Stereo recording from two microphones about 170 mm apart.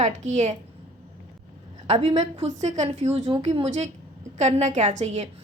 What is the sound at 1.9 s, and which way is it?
A woman's voice, 40° right (ahead or behind).